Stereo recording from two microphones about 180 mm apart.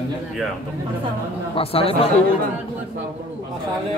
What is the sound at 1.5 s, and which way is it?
Speech, 30° left (ahead or behind).